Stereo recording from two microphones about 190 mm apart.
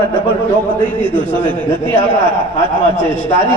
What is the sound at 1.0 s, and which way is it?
A man's voice, 25° right (ahead or behind).